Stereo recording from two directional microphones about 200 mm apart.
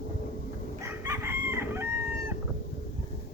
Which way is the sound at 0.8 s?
10° right (ahead or behind).